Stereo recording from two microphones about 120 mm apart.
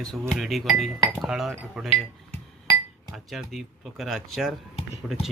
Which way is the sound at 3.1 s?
Centre (ahead or behind).